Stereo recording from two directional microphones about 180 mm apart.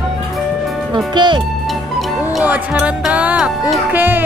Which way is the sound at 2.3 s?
5° right (ahead or behind).